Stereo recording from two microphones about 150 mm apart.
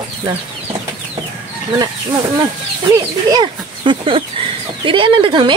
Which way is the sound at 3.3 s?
30° right (ahead or behind).